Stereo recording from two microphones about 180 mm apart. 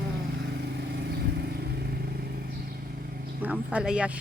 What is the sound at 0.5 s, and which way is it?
Vehicle, 65° right (ahead or behind).